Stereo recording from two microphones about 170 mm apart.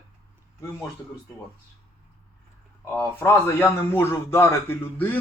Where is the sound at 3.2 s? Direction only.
15° left (ahead or behind).